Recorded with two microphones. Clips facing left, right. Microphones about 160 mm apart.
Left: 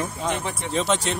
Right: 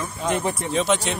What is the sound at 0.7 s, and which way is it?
Speech, centre (ahead or behind).